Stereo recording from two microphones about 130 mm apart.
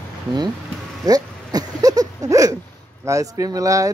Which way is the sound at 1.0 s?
30° right (ahead or behind).